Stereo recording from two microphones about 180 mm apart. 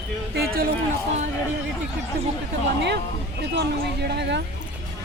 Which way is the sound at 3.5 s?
70° right (ahead or behind).